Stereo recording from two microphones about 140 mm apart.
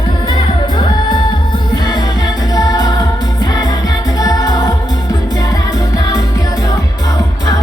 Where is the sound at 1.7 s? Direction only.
30° left (ahead or behind).